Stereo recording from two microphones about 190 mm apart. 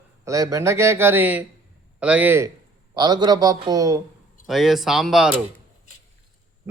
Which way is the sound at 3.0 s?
20° right (ahead or behind).